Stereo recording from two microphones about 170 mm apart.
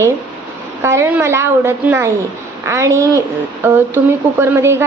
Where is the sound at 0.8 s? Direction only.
15° right (ahead or behind).